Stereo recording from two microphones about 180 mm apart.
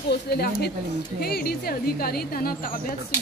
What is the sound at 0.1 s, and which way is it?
A woman's voice, 65° left (ahead or behind).